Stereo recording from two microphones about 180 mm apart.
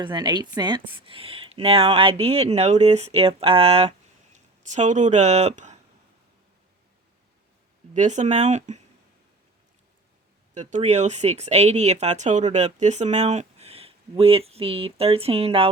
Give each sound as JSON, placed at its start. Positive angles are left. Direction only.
{"t": 0.0, "sound": "speech", "side_deg": -25}
{"t": 7.9, "sound": "speech", "side_deg": -40}
{"t": 10.5, "sound": "speech", "side_deg": -40}